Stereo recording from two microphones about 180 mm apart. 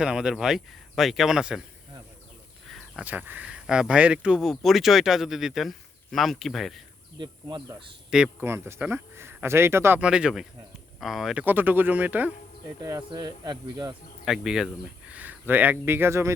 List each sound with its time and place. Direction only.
0.0 s speech: 5° right (ahead or behind)
2.6 s speech: centre (ahead or behind)
7.2 s speech: 25° right (ahead or behind)
8.1 s speech: 10° right (ahead or behind)
13.1 s speech: 20° right (ahead or behind)
14.3 s speech: 5° right (ahead or behind)